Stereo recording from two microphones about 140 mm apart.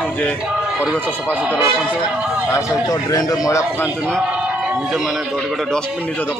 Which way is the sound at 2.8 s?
30° left (ahead or behind).